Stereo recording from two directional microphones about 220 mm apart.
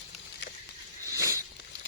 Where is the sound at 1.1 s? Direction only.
15° right (ahead or behind).